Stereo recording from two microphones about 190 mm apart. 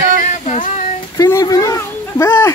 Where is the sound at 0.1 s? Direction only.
40° left (ahead or behind).